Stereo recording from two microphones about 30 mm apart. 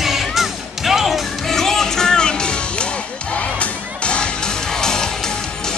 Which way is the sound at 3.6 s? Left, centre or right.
Left.